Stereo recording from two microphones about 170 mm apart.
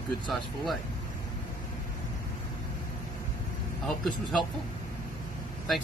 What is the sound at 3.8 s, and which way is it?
Speech, centre (ahead or behind).